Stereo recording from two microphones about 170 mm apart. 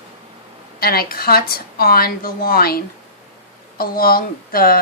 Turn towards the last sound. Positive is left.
turn(degrees=60)  # may be behind; listen again after turning